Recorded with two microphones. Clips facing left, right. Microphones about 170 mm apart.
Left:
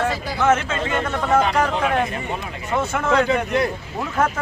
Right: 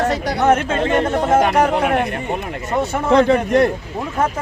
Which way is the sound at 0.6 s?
55° right (ahead or behind).